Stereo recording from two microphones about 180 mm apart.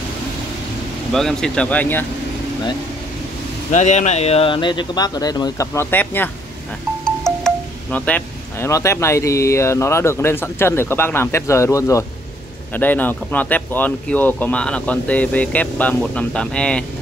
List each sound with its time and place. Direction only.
1.1 s speech: 5° left (ahead or behind)
3.7 s speech: 40° left (ahead or behind); by 16.8 s 5° left (ahead or behind)